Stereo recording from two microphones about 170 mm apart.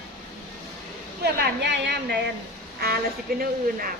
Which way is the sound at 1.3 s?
85° right.